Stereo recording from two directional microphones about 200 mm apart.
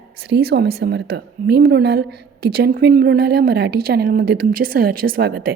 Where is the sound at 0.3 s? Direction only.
60° right (ahead or behind).